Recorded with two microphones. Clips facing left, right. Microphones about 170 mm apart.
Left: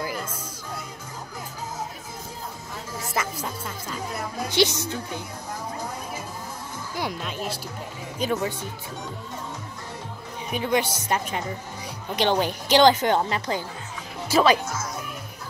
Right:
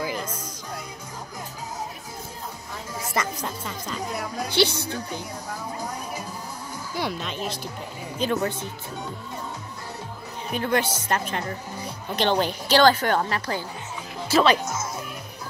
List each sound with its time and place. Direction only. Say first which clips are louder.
3.2 s a woman's voice: right 1 dB; 5° left (ahead or behind)
7.0 s a woman's voice: right 1 dB; 10° left (ahead or behind)
10.5 s a woman's voice: even; 10° left (ahead or behind)